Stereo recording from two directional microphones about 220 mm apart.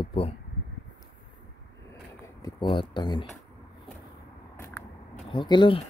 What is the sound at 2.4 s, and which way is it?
Speech, 20° left (ahead or behind).